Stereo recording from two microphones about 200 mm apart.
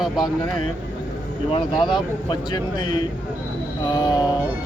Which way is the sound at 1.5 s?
25° left (ahead or behind).